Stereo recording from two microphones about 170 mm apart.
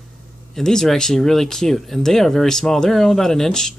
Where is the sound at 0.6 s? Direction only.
Centre (ahead or behind).